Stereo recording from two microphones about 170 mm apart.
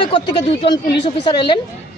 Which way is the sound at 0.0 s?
30° left (ahead or behind).